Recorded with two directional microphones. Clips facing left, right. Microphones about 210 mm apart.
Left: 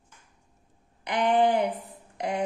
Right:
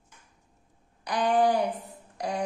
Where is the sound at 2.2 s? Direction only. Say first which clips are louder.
Left 2 dB; 25° left (ahead or behind).